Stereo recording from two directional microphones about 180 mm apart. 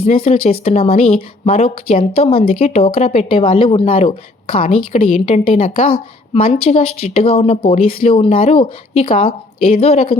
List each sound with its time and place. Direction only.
0.0 s speech: 35° left (ahead or behind)